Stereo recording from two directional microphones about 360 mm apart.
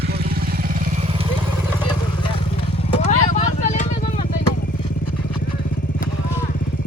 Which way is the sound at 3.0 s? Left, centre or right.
Centre.